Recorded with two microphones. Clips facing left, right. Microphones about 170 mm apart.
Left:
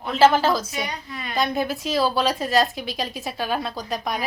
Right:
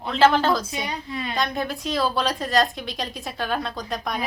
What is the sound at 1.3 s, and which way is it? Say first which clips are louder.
Speech: left 4 dB; 5° left (ahead or behind).